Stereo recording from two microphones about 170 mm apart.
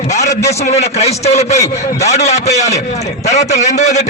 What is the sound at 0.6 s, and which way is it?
A man's voice, 40° left (ahead or behind).